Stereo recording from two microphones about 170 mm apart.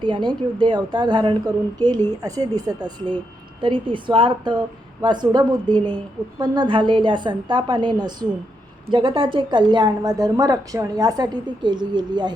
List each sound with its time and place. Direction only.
0.0 s a woman's voice: 25° right (ahead or behind)